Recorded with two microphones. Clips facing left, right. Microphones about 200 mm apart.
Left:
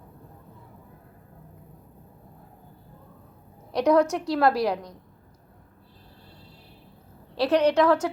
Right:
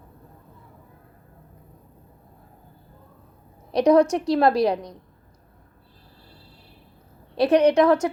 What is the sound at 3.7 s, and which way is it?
A woman's voice, 20° right (ahead or behind).